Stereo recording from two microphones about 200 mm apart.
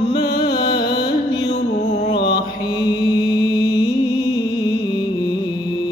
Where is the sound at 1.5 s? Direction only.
35° left (ahead or behind).